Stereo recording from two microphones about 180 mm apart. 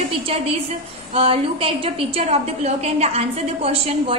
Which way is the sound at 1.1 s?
30° right (ahead or behind).